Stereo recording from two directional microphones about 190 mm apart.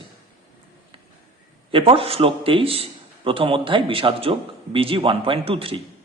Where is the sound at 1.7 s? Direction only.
30° right (ahead or behind).